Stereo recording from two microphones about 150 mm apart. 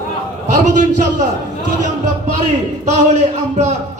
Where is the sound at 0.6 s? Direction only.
55° right (ahead or behind).